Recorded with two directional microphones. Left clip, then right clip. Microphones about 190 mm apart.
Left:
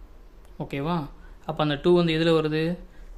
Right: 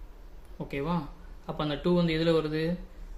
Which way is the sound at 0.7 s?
45° left (ahead or behind).